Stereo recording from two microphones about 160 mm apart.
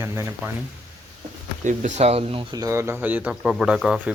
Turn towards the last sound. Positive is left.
turn(degrees=-5)  # may be behind; listen again after turning